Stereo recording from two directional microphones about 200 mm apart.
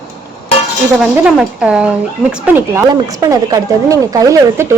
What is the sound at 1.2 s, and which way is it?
A woman's voice, 5° right (ahead or behind).